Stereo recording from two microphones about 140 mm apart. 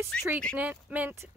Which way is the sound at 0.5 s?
10° right (ahead or behind).